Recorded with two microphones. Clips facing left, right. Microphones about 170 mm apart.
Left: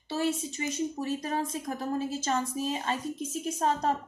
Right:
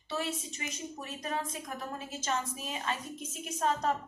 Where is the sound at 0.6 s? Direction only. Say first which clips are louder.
Left 9 dB; 35° left (ahead or behind).